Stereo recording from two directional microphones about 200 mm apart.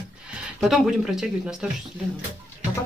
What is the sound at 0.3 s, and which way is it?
Speech, centre (ahead or behind).